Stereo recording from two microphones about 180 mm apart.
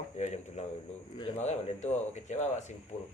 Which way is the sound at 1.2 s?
35° left (ahead or behind).